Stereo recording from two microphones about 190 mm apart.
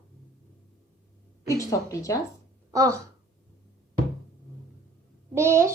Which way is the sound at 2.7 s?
15° right (ahead or behind).